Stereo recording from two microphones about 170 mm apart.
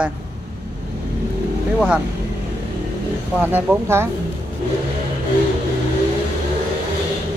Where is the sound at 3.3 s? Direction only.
10° right (ahead or behind).